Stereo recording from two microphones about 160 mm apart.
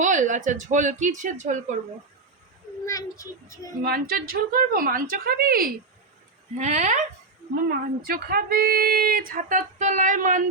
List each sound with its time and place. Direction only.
0.0 s speech: 50° right (ahead or behind)
2.8 s a child's voice: 20° left (ahead or behind)
3.8 s a woman's voice: 70° right (ahead or behind)
6.6 s speech: 45° right (ahead or behind)
7.7 s speech: 70° right (ahead or behind)